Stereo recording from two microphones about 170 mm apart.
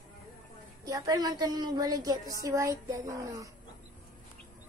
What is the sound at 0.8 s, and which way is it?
A woman's voice, 20° right (ahead or behind).